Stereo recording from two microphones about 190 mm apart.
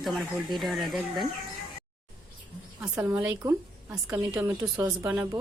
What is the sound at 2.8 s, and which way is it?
Speech, 5° right (ahead or behind).